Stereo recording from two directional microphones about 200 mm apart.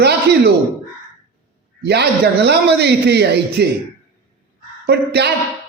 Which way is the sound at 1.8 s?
55° right (ahead or behind).